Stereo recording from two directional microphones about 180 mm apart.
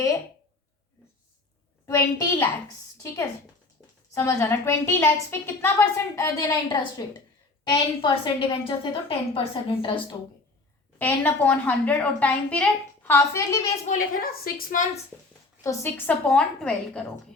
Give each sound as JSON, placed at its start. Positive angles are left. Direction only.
{"t": 1.9, "sound": "a woman's voice", "side_deg": 15}
{"t": 4.1, "sound": "a woman's voice", "side_deg": 15}
{"t": 10.9, "sound": "a woman's voice", "side_deg": 10}
{"t": 13.8, "sound": "a woman's voice", "side_deg": 45}
{"t": 15.6, "sound": "a woman's voice", "side_deg": 10}